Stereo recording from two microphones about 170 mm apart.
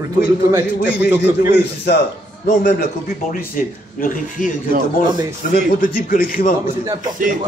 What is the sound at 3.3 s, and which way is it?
Speech, 55° left (ahead or behind).